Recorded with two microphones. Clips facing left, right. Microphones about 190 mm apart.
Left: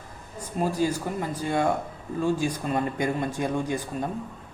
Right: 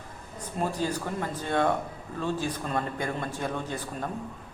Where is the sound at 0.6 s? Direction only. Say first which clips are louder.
Left 4 dB; 10° left (ahead or behind).